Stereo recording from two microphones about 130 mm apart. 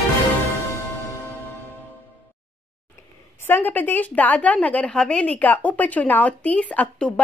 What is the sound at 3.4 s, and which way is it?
A woman's voice, 15° left (ahead or behind).